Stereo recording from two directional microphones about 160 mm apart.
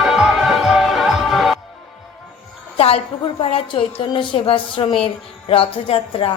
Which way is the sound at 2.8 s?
35° left (ahead or behind).